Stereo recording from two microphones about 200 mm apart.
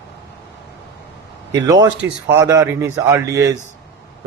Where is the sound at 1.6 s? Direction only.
20° right (ahead or behind).